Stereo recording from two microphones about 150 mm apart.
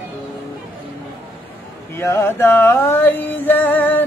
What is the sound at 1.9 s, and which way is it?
Music, 20° left (ahead or behind).